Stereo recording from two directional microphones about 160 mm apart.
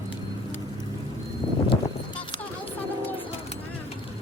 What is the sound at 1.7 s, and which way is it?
Livestock, 30° left (ahead or behind).